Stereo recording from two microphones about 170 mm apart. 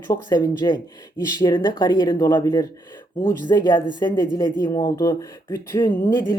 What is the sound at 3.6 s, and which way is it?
Speech, 25° left (ahead or behind).